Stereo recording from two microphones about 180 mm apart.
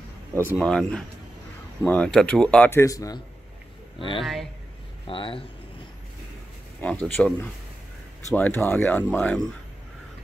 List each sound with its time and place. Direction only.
0.3 s speech: 10° right (ahead or behind)
0.6 s speech: 5° left (ahead or behind)
4.2 s speech: centre (ahead or behind)
5.0 s speech: 30° left (ahead or behind)
6.8 s speech: 10° left (ahead or behind)